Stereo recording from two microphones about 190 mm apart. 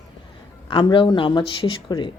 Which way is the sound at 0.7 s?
25° left (ahead or behind).